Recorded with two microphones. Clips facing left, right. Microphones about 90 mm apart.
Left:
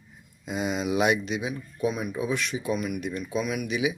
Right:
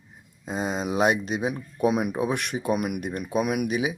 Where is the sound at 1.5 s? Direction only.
65° right (ahead or behind).